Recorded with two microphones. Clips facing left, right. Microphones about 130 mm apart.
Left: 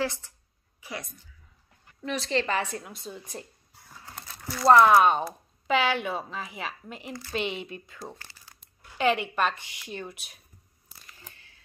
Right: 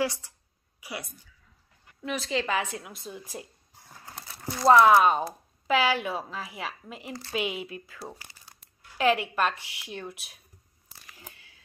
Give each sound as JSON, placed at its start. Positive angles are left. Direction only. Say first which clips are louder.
{"t": 0.7, "sound": "a woman's voice", "louder": "even", "side_deg": -10}
{"t": 4.3, "sound": "horse", "louder": "right 1 dB", "side_deg": -20}
{"t": 4.6, "sound": "a woman's voice", "louder": "even", "side_deg": 0}
{"t": 11.1, "sound": "a sound", "louder": "right 5 dB", "side_deg": -10}